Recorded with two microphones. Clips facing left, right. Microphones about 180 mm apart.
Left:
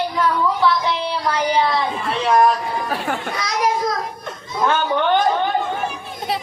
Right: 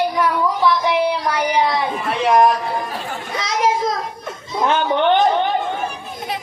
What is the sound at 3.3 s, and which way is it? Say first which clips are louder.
Children playing: right 4 dB; 20° right (ahead or behind).